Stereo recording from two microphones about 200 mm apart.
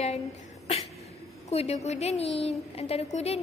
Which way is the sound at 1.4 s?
30° left (ahead or behind).